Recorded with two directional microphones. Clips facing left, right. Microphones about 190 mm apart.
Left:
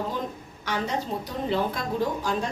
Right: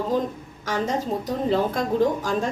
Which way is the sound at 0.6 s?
45° right (ahead or behind).